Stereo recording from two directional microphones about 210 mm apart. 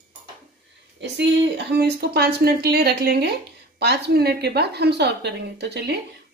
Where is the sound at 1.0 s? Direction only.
55° right (ahead or behind).